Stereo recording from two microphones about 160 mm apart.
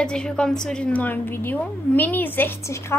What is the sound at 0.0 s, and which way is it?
A woman's voice, 5° left (ahead or behind).